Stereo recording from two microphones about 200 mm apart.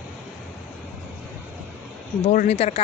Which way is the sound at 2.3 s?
35° left (ahead or behind).